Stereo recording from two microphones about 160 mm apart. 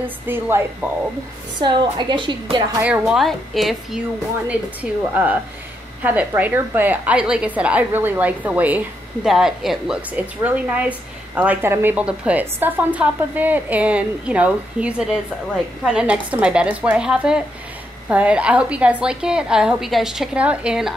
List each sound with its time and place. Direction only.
0.0 s a woman's voice: 15° right (ahead or behind)
1.6 s a woman's voice: 30° right (ahead or behind)
2.8 s a woman's voice: 5° right (ahead or behind)
5.1 s a woman's voice: 10° right (ahead or behind)